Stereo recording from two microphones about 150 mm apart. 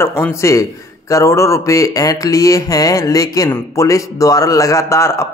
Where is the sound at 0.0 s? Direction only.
15° left (ahead or behind).